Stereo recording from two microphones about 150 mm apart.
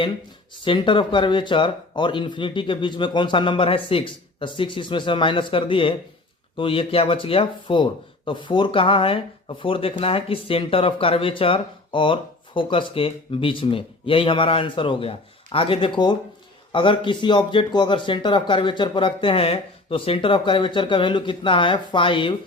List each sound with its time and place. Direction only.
0.6 s speech: 35° left (ahead or behind)